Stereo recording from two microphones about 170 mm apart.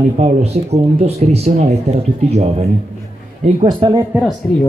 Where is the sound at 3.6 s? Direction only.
30° right (ahead or behind).